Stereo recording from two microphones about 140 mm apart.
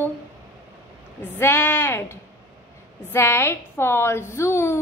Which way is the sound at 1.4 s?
15° left (ahead or behind).